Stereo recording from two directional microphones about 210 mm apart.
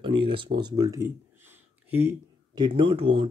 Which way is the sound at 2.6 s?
25° right (ahead or behind).